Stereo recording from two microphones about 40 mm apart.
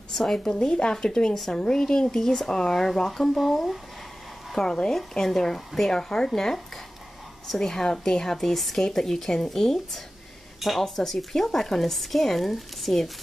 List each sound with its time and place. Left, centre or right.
0.1 s a woman's voice: centre
0.5 s a woman's voice: left; by 13.1 s centre